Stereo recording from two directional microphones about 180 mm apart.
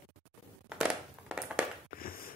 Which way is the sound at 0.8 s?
5° right (ahead or behind).